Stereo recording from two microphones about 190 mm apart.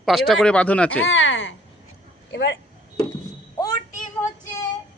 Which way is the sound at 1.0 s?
90° left.